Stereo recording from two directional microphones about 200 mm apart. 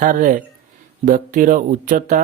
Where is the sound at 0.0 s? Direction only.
40° right (ahead or behind).